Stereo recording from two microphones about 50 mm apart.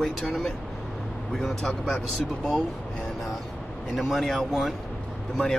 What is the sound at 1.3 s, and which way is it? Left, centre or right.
Speech, centre.